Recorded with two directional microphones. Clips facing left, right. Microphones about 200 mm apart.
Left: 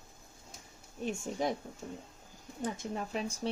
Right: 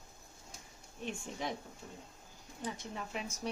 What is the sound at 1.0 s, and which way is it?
A woman's voice, 40° left (ahead or behind).